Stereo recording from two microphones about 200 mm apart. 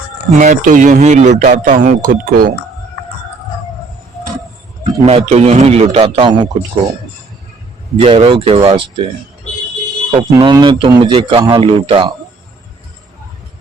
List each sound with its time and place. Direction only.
0.3 s speech: 40° right (ahead or behind)
5.0 s speech: 30° right (ahead or behind)
8.0 s a man's voice: 25° right (ahead or behind)
10.2 s a man's voice: 20° right (ahead or behind)